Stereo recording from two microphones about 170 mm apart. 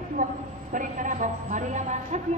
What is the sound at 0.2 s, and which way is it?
A man's voice, 50° right (ahead or behind).